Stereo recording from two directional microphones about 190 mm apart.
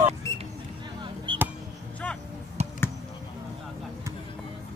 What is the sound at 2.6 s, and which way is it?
Basketball bounce, 35° right (ahead or behind).